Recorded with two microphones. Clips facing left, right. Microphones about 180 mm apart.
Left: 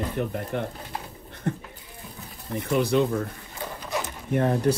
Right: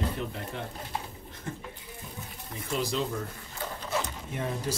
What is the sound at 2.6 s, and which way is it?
Speech, 60° left (ahead or behind).